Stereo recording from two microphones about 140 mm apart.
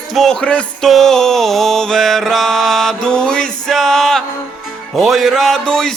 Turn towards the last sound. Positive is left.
turn(degrees=5)  # may be behind; listen again after turning